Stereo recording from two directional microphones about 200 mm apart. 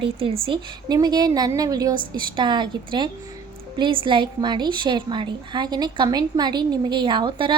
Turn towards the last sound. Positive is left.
turn(degrees=-25)  # may be behind; listen again after turning